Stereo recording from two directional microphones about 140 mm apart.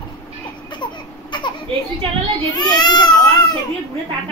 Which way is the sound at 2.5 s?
30° left (ahead or behind).